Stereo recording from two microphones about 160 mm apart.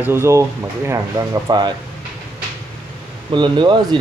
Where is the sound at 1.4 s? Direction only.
25° right (ahead or behind).